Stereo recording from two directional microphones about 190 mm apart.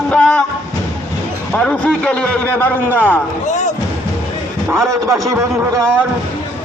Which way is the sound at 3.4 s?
40° left (ahead or behind).